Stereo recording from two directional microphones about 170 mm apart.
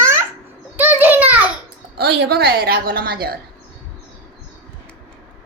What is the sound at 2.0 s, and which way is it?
A woman's voice, 65° right (ahead or behind).